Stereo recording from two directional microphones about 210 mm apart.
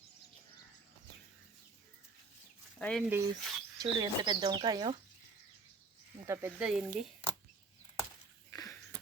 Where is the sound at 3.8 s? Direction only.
20° right (ahead or behind).